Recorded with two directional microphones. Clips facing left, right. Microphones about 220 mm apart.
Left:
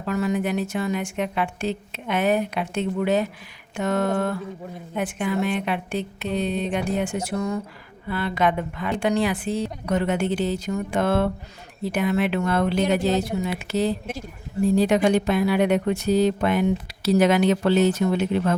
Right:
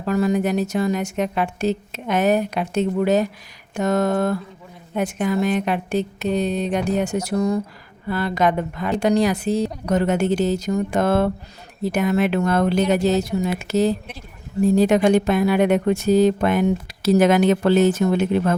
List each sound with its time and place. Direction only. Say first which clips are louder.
0.0 s a woman's voice: right 4 dB; 40° right (ahead or behind)